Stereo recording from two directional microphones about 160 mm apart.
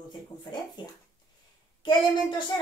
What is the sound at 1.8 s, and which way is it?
Speech, 30° left (ahead or behind).